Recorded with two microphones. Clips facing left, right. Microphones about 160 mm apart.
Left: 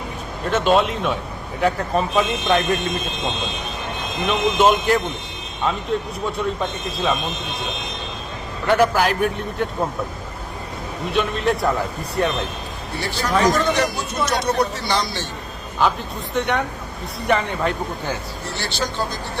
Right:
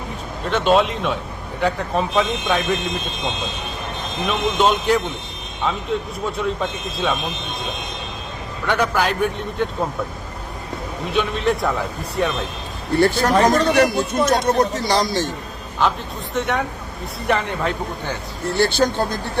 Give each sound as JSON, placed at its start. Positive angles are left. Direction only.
{"t": 0.5, "sound": "speech", "side_deg": 0}
{"t": 4.3, "sound": "speech", "side_deg": 5}
{"t": 8.6, "sound": "speech", "side_deg": 5}
{"t": 11.0, "sound": "speech", "side_deg": 0}
{"t": 12.9, "sound": "speech", "side_deg": -55}
{"t": 15.8, "sound": "speech", "side_deg": 0}
{"t": 18.5, "sound": "speech", "side_deg": -50}